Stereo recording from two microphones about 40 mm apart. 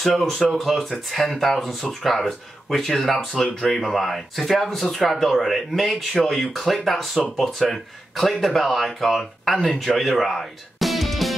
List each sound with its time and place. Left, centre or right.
0.0 s speech: centre
10.2 s music: centre